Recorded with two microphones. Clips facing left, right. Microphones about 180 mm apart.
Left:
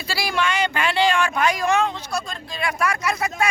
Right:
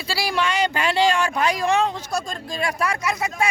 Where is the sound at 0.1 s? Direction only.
30° right (ahead or behind).